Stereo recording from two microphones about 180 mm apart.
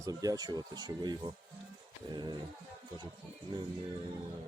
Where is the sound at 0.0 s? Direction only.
20° right (ahead or behind).